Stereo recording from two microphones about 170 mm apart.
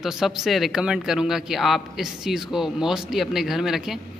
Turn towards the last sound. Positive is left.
turn(degrees=0)  # may be behind; listen again after turning